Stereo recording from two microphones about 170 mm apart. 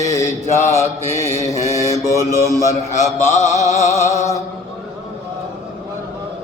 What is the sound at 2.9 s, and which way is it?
Mantra, 45° left (ahead or behind).